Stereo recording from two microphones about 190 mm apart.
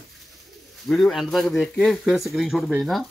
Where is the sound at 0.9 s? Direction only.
Centre (ahead or behind).